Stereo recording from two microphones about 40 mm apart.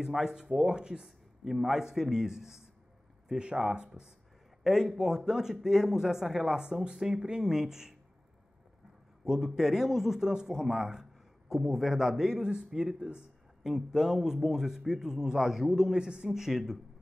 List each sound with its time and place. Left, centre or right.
0.0 s speech: centre
1.0 s a man's voice: centre; by 7.4 s right
7.4 s speech: centre
9.2 s speech: centre
10.2 s speech: centre
11.5 s speech: centre